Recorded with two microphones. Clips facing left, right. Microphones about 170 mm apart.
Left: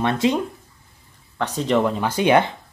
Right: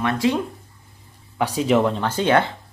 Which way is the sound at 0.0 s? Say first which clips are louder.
Left 1 dB; 20° left (ahead or behind).